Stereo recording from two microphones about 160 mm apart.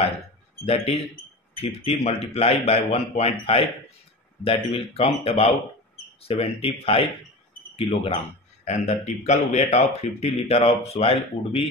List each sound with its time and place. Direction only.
1.5 s speech: 40° left (ahead or behind)